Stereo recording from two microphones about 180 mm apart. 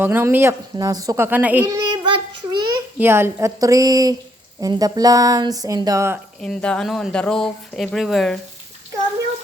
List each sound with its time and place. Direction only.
0.0 s speech: 10° right (ahead or behind)
2.0 s child singing: 25° right (ahead or behind)
3.0 s speech: 15° right (ahead or behind)
6.4 s speech: 5° left (ahead or behind)